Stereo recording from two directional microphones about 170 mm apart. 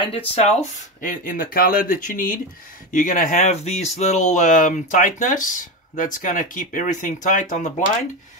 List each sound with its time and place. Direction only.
0.0 s speech: 35° left (ahead or behind)